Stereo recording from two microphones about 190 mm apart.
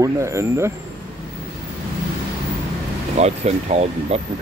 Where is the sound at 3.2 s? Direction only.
35° right (ahead or behind).